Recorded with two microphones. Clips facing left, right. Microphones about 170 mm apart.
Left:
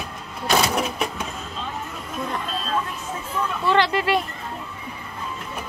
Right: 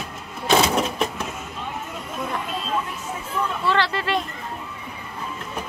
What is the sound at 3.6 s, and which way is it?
Speech, 15° left (ahead or behind).